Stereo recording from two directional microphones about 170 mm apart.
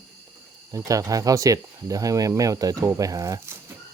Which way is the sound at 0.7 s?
20° right (ahead or behind).